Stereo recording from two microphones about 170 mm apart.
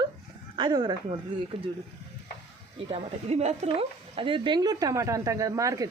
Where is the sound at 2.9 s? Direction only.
35° right (ahead or behind); by 5.8 s 20° right (ahead or behind).